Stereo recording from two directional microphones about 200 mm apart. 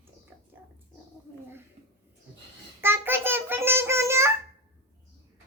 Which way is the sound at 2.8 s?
10° right (ahead or behind).